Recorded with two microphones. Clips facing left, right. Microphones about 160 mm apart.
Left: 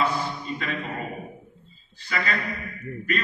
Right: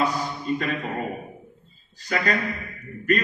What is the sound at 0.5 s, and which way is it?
Speech, 45° right (ahead or behind).